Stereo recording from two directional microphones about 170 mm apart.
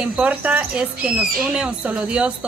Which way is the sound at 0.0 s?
10° right (ahead or behind).